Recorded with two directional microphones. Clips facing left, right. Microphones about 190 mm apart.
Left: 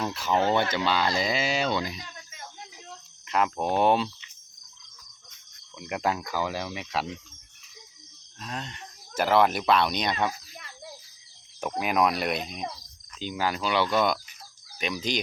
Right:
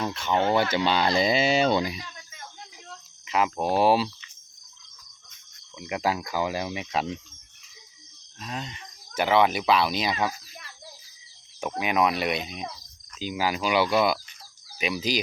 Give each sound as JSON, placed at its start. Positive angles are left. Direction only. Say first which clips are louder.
{"t": 0.0, "sound": "speech", "louder": "even", "side_deg": 0}
{"t": 0.9, "sound": "a sound", "louder": "right 3 dB", "side_deg": -20}
{"t": 3.2, "sound": "speech", "louder": "right 1 dB", "side_deg": 0}
{"t": 5.7, "sound": "speech", "louder": "right 1 dB", "side_deg": 0}
{"t": 8.4, "sound": "speech", "louder": "right 1 dB", "side_deg": 0}
{"t": 11.8, "sound": "speech", "louder": "right 1 dB", "side_deg": 0}